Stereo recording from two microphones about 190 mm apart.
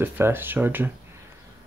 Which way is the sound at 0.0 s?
10° right (ahead or behind).